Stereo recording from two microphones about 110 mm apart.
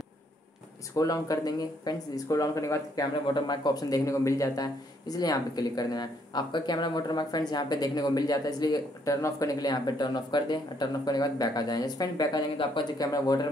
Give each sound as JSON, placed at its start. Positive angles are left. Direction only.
{"t": 0.9, "sound": "speech", "side_deg": 30}
{"t": 12.5, "sound": "speech", "side_deg": 45}
{"t": 13.0, "sound": "speech", "side_deg": 35}